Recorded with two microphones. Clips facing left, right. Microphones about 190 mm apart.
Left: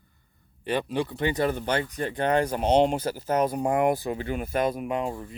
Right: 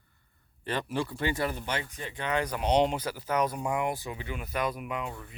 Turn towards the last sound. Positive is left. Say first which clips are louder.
# left 7 dB
turn(degrees=40)  # may be behind; listen again after turning